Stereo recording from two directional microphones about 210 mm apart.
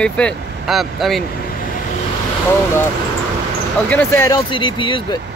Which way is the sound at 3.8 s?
10° left (ahead or behind).